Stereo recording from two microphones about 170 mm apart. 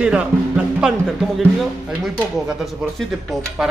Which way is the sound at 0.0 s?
5° right (ahead or behind).